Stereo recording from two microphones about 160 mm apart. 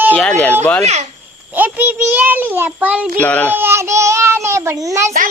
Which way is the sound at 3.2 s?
10° left (ahead or behind).